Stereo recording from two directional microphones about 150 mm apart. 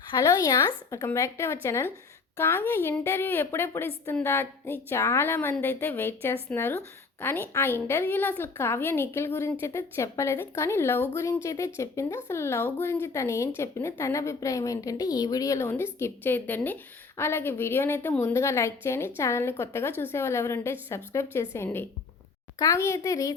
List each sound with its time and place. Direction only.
0.1 s a woman's voice: 25° left (ahead or behind)